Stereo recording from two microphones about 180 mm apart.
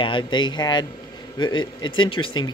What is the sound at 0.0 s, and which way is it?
Speech, 25° left (ahead or behind).